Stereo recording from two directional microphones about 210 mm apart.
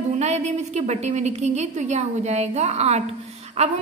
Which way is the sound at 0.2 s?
30° right (ahead or behind).